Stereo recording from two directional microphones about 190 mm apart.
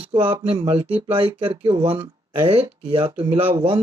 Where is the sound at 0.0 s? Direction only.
30° right (ahead or behind).